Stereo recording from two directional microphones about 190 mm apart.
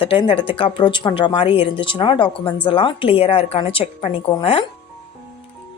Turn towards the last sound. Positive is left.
turn(degrees=25)  # may be behind; listen again after turning